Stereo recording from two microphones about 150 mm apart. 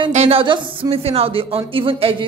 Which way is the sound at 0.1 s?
40° right (ahead or behind).